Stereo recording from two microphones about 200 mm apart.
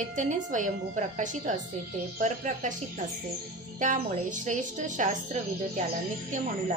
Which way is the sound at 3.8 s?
40° right (ahead or behind).